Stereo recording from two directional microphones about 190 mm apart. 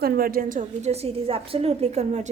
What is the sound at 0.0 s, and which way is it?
A woman's voice, 50° right (ahead or behind).